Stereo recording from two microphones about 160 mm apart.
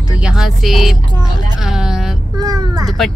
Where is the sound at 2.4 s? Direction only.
25° right (ahead or behind).